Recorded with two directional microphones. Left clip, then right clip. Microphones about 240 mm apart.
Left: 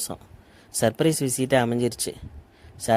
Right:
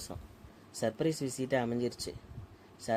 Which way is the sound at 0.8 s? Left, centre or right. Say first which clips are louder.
Left 11 dB; left.